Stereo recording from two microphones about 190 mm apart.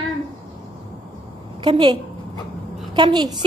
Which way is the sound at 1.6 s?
25° right (ahead or behind).